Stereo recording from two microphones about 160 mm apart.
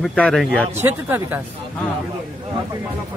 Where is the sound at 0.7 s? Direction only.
15° right (ahead or behind).